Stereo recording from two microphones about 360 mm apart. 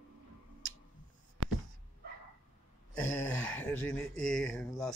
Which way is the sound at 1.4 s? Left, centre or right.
Right.